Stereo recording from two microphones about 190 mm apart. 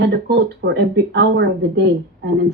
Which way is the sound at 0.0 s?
60° right (ahead or behind).